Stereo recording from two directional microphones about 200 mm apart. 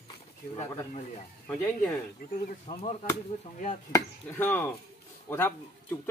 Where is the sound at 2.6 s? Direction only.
30° left (ahead or behind).